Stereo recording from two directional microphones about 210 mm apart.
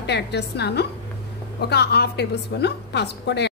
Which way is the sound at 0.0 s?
55° left (ahead or behind).